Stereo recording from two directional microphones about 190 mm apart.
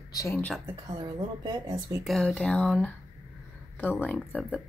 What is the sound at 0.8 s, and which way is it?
Speech, 20° right (ahead or behind).